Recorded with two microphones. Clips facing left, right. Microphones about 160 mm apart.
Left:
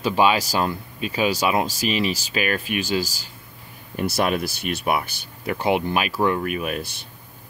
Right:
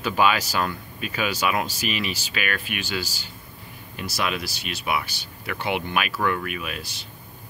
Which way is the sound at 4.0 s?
50° left (ahead or behind).